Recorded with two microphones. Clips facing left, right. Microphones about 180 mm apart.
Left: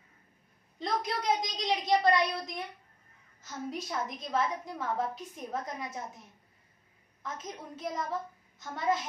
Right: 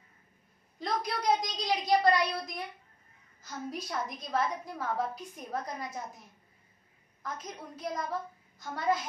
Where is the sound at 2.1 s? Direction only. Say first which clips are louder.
Left 1 dB; 25° left (ahead or behind).